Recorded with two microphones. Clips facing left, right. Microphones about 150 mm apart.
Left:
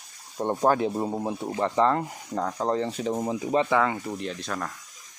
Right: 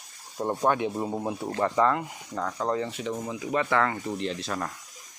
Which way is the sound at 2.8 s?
35° left (ahead or behind).